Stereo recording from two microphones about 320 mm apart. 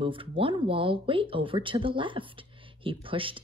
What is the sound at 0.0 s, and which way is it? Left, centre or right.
Speech, centre.